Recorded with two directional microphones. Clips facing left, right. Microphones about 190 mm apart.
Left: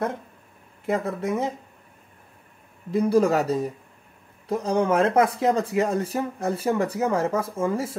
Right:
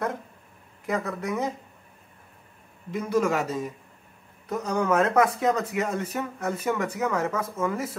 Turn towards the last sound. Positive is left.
turn(degrees=30)  # may be behind; listen again after turning